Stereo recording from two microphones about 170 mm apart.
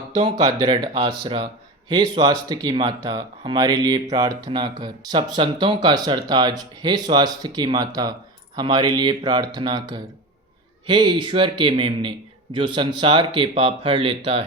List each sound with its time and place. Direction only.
0.3 s speech: 25° right (ahead or behind)